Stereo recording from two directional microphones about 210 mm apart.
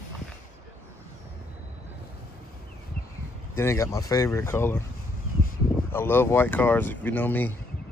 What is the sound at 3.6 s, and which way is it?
Speech, 15° left (ahead or behind).